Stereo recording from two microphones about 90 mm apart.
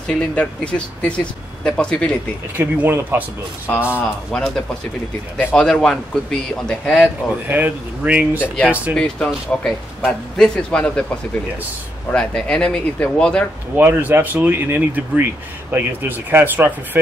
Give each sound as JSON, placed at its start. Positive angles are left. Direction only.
{"t": 0.2, "sound": "speech", "side_deg": 10}
{"t": 2.5, "sound": "speech", "side_deg": -20}
{"t": 4.0, "sound": "speech", "side_deg": 5}
{"t": 7.4, "sound": "speech", "side_deg": -20}
{"t": 8.9, "sound": "speech", "side_deg": 10}
{"t": 12.1, "sound": "speech", "side_deg": 10}
{"t": 13.7, "sound": "speech", "side_deg": -20}